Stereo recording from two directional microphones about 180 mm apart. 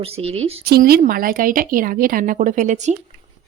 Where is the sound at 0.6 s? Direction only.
60° right (ahead or behind); by 2.9 s 40° right (ahead or behind).